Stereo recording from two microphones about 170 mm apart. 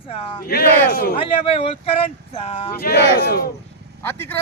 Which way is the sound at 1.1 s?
35° left (ahead or behind).